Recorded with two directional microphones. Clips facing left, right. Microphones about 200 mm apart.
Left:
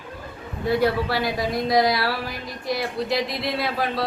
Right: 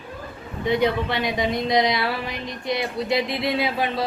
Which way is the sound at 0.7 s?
5° left (ahead or behind).